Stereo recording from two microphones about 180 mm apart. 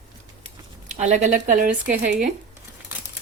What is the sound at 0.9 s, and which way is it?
Speech, 40° right (ahead or behind).